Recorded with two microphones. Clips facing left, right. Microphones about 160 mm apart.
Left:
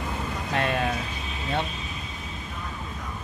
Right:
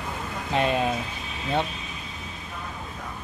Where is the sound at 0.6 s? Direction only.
20° right (ahead or behind).